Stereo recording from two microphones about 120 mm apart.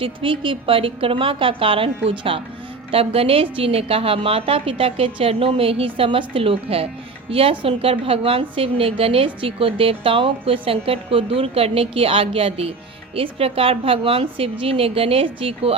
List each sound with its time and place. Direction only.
0.0 s a woman's voice: 45° right (ahead or behind)